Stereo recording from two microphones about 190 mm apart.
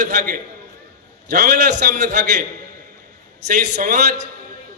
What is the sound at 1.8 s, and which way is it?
Speech, 50° right (ahead or behind).